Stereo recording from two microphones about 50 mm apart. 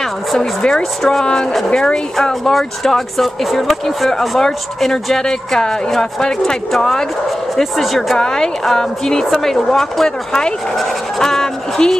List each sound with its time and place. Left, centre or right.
0.4 s speech: centre
8.2 s speech: centre